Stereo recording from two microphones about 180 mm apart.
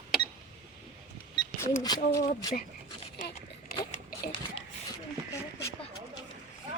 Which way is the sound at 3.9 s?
55° left (ahead or behind).